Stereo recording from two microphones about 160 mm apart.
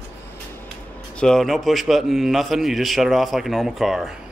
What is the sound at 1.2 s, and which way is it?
A man's voice, 5° left (ahead or behind).